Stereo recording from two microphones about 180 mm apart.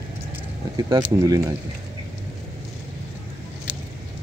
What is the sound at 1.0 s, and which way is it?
Speech, 15° right (ahead or behind).